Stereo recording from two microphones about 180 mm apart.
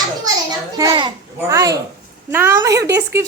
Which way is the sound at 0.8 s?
20° right (ahead or behind).